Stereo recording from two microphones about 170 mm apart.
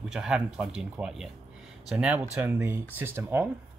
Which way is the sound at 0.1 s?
5° right (ahead or behind).